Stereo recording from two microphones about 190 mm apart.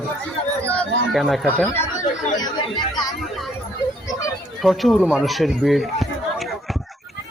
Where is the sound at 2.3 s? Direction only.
20° left (ahead or behind).